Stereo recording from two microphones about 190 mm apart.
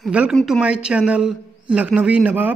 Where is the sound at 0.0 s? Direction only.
5° right (ahead or behind).